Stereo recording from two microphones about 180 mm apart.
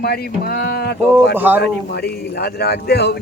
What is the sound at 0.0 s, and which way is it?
Speech, 60° left (ahead or behind).